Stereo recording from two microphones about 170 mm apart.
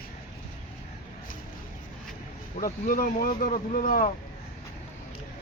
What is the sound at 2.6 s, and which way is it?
Speech, 55° left (ahead or behind).